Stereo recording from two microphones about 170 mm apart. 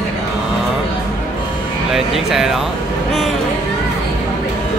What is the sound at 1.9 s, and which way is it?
Speech, 5° right (ahead or behind).